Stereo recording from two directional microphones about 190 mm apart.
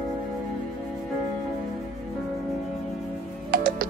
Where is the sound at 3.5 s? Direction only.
50° right (ahead or behind).